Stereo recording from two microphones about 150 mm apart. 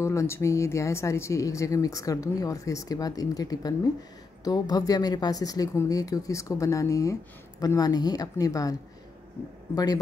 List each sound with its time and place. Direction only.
0.0 s speech: 20° left (ahead or behind)